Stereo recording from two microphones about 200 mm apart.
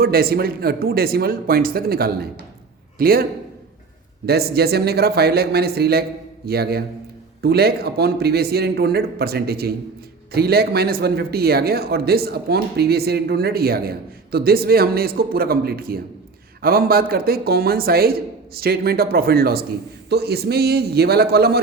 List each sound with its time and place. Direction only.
0.0 s a man's voice: 50° right (ahead or behind)
4.3 s a man's voice: 50° right (ahead or behind)